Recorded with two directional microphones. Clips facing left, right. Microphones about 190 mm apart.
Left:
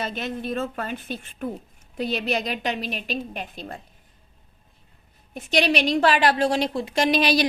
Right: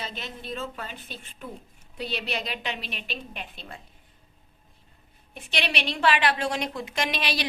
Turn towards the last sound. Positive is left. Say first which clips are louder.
# left 9 dB
turn(degrees=40)  # may be behind; listen again after turning